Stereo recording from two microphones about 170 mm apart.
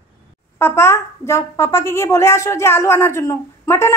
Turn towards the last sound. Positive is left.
turn(degrees=15)  # may be behind; listen again after turning